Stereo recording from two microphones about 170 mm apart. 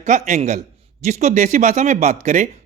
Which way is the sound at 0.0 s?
45° right (ahead or behind).